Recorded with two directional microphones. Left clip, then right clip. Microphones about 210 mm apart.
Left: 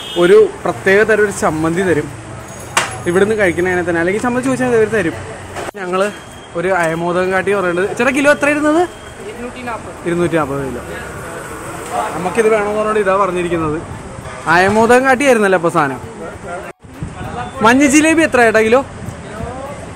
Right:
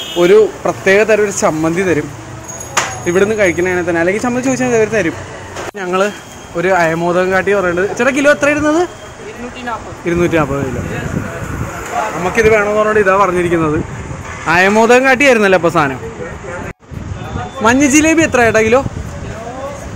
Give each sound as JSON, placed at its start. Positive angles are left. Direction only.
{"t": 0.2, "sound": "speech", "side_deg": -5}
{"t": 3.1, "sound": "speech", "side_deg": 0}
{"t": 5.8, "sound": "speech", "side_deg": -15}
{"t": 10.0, "sound": "speech", "side_deg": -10}
{"t": 12.4, "sound": "speech", "side_deg": -15}
{"t": 17.6, "sound": "speech", "side_deg": 5}